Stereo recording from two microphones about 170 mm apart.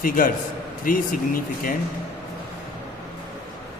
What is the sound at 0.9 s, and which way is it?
Speech, 55° left (ahead or behind).